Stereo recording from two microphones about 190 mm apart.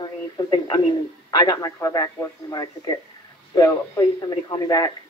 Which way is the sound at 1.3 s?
20° left (ahead or behind).